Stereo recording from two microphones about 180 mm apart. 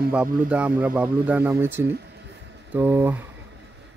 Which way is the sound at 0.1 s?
5° right (ahead or behind).